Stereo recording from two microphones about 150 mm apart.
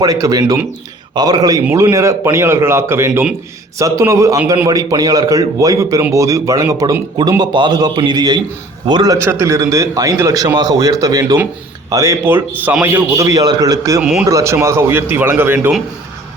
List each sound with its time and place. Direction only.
0.0 s a man's voice: 25° right (ahead or behind)
3.1 s speech: 5° right (ahead or behind)
3.8 s a man's voice: 20° right (ahead or behind)
9.2 s a man's voice: 15° right (ahead or behind)
14.0 s speech: 5° right (ahead or behind)
14.3 s a man's voice: 20° right (ahead or behind)